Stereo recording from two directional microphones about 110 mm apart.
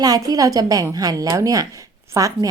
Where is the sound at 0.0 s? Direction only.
35° right (ahead or behind).